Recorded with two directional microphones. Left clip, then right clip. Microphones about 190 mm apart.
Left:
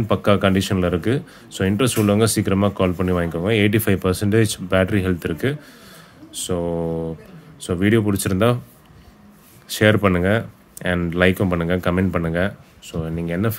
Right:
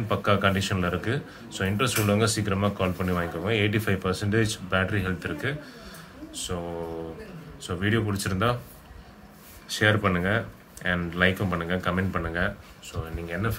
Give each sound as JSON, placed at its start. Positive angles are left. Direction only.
{"t": 0.1, "sound": "speech", "side_deg": 40}
{"t": 9.7, "sound": "speech", "side_deg": 45}